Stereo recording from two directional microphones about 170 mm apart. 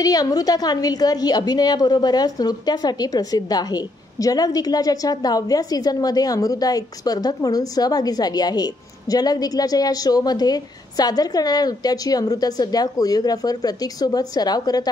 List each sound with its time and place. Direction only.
0.0 s a woman's voice: 20° left (ahead or behind)